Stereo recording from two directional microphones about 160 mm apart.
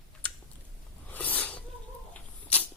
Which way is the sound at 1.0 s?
10° left (ahead or behind).